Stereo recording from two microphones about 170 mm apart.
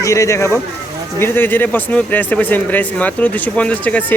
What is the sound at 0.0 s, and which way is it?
Speech, 20° left (ahead or behind).